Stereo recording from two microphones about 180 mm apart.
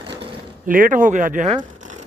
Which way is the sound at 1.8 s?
45° right (ahead or behind).